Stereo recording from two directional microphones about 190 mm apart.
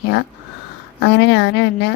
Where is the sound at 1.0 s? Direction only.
65° left (ahead or behind).